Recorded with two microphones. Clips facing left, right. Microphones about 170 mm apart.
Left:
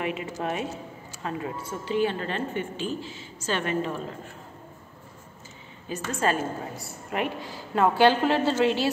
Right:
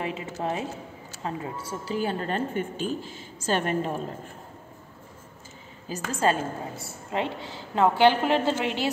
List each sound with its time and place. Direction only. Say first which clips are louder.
0.0 s a woman's voice: left 1 dB; 30° right (ahead or behind)
5.9 s a woman's voice: right 1 dB; 35° right (ahead or behind)